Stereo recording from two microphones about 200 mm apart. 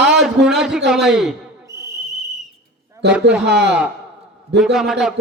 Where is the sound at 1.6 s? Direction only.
15° right (ahead or behind).